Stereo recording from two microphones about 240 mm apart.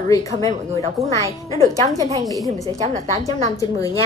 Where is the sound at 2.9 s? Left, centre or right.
Right.